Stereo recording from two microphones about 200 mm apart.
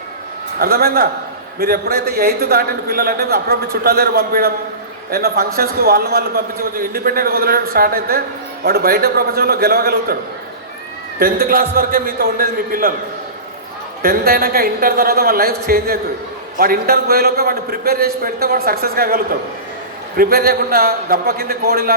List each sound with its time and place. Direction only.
0.6 s a man's voice: 50° right (ahead or behind)
11.2 s a man's voice: 50° right (ahead or behind)
14.0 s a man's voice: 50° right (ahead or behind)